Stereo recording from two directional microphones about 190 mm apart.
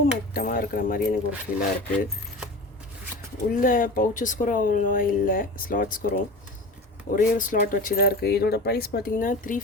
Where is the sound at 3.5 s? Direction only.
45° left (ahead or behind).